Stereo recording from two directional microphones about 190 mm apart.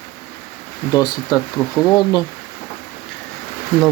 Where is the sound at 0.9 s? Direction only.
20° left (ahead or behind).